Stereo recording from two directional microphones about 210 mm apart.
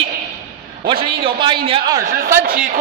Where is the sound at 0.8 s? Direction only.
25° right (ahead or behind).